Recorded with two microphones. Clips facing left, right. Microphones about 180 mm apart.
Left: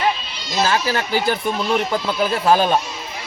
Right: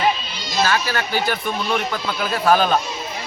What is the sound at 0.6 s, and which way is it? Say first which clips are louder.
Speech: left 1 dB; 25° left (ahead or behind).